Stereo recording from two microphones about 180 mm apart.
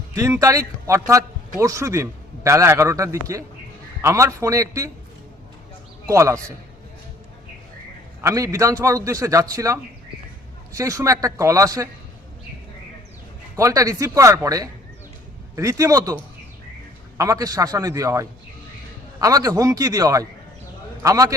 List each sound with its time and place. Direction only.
0.2 s a man's voice: 15° right (ahead or behind)
6.1 s a man's voice: 15° right (ahead or behind)
8.2 s a man's voice: 15° right (ahead or behind)
13.6 s a man's voice: 20° right (ahead or behind)